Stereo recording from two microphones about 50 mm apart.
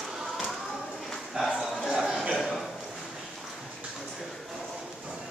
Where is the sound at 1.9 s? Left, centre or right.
Centre.